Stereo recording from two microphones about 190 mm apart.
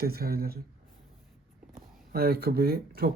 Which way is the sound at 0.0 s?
55° right (ahead or behind).